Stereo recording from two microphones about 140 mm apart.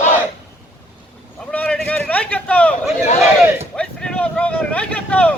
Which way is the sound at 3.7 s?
5° left (ahead or behind).